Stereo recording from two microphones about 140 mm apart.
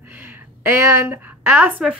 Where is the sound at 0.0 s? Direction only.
15° right (ahead or behind).